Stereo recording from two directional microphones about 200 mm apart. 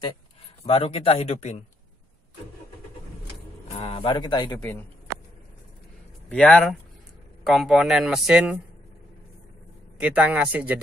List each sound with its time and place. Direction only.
0.7 s speech: 30° left (ahead or behind)
3.7 s speech: 30° left (ahead or behind)
6.2 s speech: 5° left (ahead or behind)
9.9 s speech: 5° right (ahead or behind)